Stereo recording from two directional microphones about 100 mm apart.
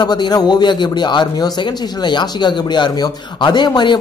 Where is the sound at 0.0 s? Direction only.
45° left (ahead or behind).